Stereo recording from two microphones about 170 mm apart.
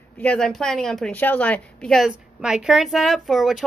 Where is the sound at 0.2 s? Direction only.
5° left (ahead or behind).